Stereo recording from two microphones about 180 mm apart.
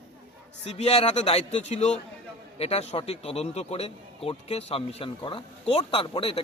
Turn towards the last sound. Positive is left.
turn(degrees=30)  # may be behind; listen again after turning